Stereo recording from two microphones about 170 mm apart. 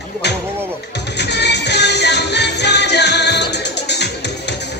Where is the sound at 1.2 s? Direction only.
85° left.